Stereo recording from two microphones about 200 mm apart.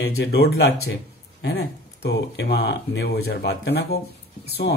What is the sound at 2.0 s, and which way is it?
Speech, 60° left (ahead or behind).